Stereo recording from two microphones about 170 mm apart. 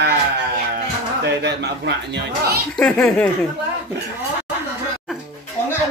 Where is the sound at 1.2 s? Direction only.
80° right.